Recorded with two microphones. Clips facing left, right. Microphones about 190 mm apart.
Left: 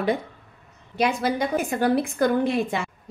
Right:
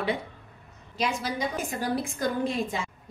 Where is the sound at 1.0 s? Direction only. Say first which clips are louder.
Left 6 dB; 60° left (ahead or behind).